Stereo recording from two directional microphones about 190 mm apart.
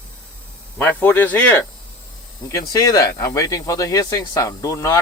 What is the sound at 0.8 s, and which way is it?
Speech, 10° left (ahead or behind).